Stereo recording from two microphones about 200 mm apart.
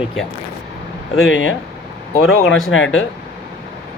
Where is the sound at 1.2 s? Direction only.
75° left (ahead or behind).